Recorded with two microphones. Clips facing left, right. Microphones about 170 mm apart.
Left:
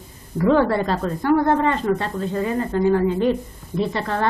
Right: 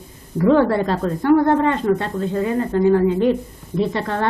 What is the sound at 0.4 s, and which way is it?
A woman's voice, 35° right (ahead or behind).